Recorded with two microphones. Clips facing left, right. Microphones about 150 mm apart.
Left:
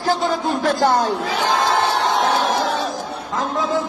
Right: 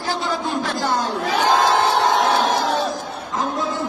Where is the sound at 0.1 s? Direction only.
50° left (ahead or behind).